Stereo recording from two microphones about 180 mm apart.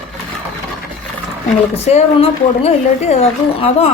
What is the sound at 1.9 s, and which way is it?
A woman's voice, 35° left (ahead or behind).